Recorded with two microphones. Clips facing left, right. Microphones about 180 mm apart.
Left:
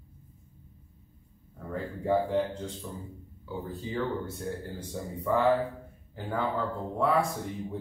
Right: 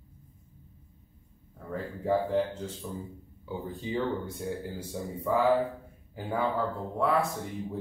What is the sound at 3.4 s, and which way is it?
Speech, 15° right (ahead or behind).